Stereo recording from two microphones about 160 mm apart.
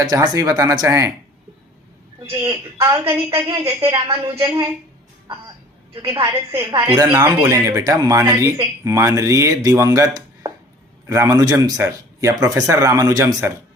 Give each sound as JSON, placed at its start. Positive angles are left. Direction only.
{"t": 0.0, "sound": "speech", "side_deg": -20}
{"t": 2.7, "sound": "a woman's voice", "side_deg": -15}
{"t": 5.9, "sound": "a woman's voice", "side_deg": -30}
{"t": 6.8, "sound": "speech", "side_deg": -20}